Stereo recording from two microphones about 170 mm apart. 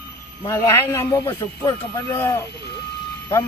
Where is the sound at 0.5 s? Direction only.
15° left (ahead or behind).